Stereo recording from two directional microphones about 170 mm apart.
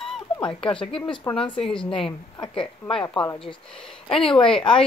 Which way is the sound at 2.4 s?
30° left (ahead or behind).